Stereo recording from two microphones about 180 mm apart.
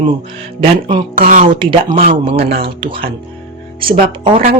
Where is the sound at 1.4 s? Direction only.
30° right (ahead or behind).